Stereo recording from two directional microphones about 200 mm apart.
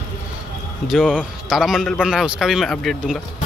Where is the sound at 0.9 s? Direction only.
Centre (ahead or behind).